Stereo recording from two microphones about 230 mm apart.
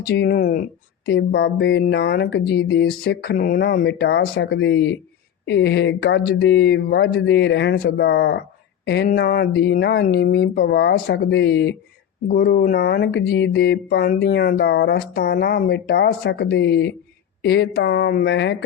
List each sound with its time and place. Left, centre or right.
0.1 s speech: left